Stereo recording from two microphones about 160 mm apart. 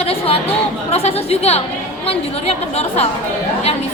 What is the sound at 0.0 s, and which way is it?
Chatter, 40° left (ahead or behind).